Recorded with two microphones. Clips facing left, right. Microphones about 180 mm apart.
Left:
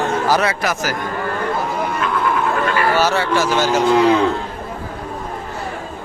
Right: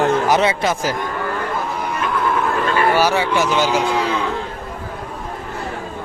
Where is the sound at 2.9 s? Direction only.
15° right (ahead or behind).